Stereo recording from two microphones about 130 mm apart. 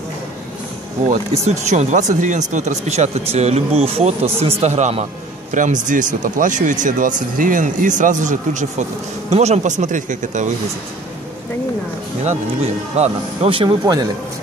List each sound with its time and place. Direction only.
1.0 s speech: 60° right (ahead or behind)
5.5 s speech: 75° right (ahead or behind)
9.3 s speech: 55° right (ahead or behind)
12.9 s a man's voice: 50° right (ahead or behind); by 14.0 s 35° right (ahead or behind)